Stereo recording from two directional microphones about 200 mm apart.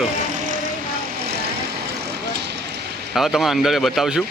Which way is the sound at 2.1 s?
55° right (ahead or behind).